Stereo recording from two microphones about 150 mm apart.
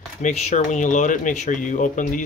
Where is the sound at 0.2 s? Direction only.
50° left (ahead or behind).